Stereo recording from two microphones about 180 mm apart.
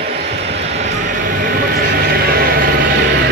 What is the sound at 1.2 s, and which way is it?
Vehicle, 55° right (ahead or behind).